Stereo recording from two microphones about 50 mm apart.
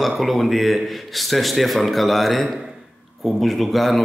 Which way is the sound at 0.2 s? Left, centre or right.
Centre.